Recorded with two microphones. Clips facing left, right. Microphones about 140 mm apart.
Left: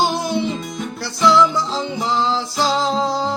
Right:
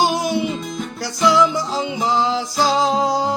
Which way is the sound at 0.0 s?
15° right (ahead or behind).